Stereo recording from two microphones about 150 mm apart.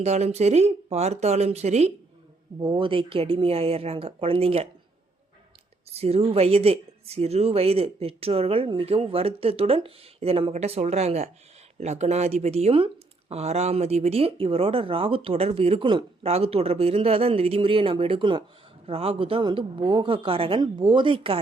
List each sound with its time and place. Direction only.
0.0 s speech: 45° right (ahead or behind)
2.6 s speech: 35° right (ahead or behind)
5.9 s speech: 45° right (ahead or behind)